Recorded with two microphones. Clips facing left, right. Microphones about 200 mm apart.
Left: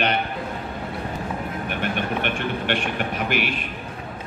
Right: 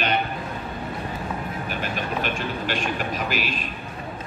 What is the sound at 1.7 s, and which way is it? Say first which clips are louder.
Speech: left 3 dB; 65° left (ahead or behind).